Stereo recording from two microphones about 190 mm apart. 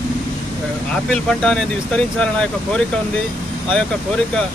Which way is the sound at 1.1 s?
5° left (ahead or behind).